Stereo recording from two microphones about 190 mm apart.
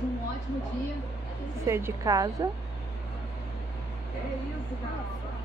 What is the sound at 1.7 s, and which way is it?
Speech, 15° right (ahead or behind).